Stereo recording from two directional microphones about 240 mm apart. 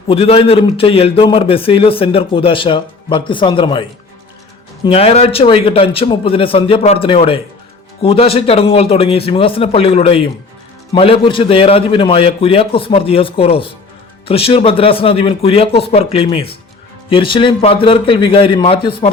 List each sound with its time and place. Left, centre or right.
0.1 s a man's voice: left